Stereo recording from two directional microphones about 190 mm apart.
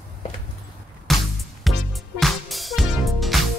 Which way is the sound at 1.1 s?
Centre (ahead or behind).